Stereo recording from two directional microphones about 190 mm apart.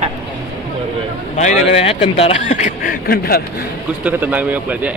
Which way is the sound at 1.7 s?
30° left (ahead or behind).